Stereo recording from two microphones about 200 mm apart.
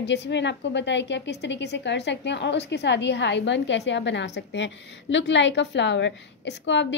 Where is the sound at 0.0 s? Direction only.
60° left (ahead or behind).